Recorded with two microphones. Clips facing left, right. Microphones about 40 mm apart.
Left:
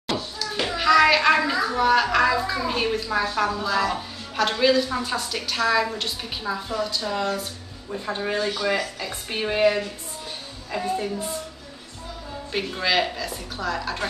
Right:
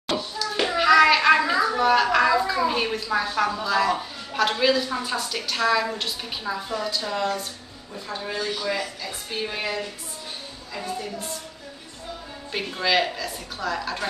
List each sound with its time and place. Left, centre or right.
0.4 s a sound: centre
1.4 s a woman's voice: centre
7.9 s speech: left
11.0 s a woman's voice: left
12.5 s a woman's voice: centre